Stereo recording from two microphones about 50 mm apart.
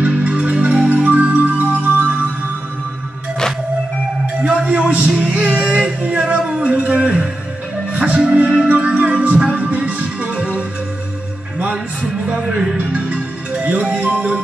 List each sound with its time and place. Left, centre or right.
0.0 s music: right
4.6 s a sound: right
5.6 s music: right
6.7 s a sound: right
7.9 s music: right
8.6 s music: right
12.7 s music: right